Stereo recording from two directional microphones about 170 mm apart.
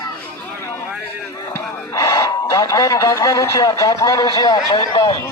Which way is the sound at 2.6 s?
20° left (ahead or behind).